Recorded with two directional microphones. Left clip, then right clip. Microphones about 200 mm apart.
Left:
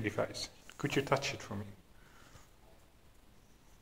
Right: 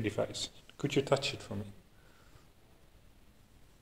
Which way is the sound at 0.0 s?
20° right (ahead or behind).